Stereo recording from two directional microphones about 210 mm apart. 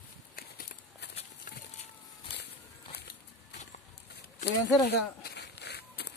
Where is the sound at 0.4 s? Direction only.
45° left (ahead or behind).